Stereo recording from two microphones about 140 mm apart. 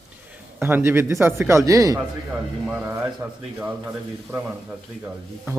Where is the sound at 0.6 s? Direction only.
15° right (ahead or behind).